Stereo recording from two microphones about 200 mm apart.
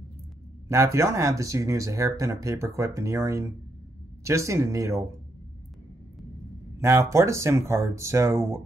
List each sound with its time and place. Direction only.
0.7 s speech: 15° right (ahead or behind)
6.8 s speech: 15° right (ahead or behind)